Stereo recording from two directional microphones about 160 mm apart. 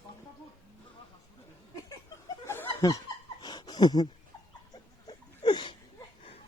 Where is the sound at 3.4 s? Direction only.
25° left (ahead or behind).